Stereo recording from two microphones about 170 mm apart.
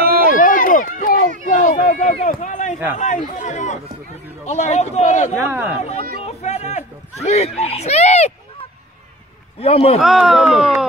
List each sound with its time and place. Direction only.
0.4 s run: 50° left (ahead or behind)
1.4 s a sound: 50° left (ahead or behind)
3.0 s speech: 45° left (ahead or behind)
5.4 s speech: 10° right (ahead or behind)
5.8 s a man's voice: 40° left (ahead or behind)
6.2 s a sound: 40° left (ahead or behind)
9.6 s a man's voice: 35° left (ahead or behind)
9.9 s speech: centre (ahead or behind)